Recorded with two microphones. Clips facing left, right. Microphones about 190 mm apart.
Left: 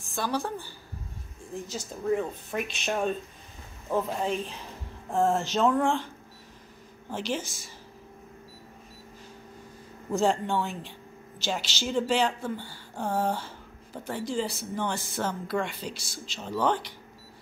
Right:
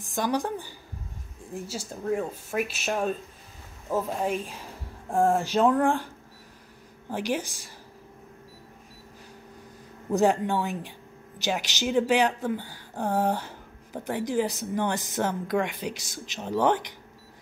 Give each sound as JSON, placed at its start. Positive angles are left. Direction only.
{"t": 0.1, "sound": "speech", "side_deg": -15}
{"t": 7.1, "sound": "speech", "side_deg": -15}
{"t": 10.1, "sound": "speech", "side_deg": -15}